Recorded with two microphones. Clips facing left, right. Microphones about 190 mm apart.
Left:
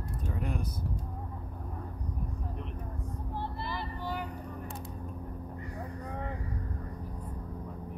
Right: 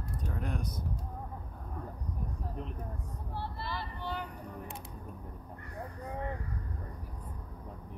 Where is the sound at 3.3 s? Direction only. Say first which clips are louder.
Left 1 dB; 15° left (ahead or behind).